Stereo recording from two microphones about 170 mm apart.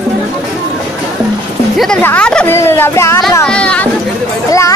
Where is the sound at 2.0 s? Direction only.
5° left (ahead or behind).